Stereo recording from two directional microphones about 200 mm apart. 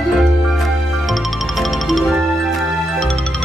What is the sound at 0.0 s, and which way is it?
Music, centre (ahead or behind).